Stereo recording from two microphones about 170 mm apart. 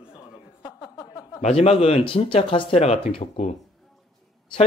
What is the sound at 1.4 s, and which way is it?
A man's voice, 35° left (ahead or behind).